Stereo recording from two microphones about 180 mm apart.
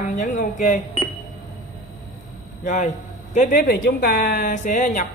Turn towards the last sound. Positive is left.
turn(degrees=45)  # may be behind; listen again after turning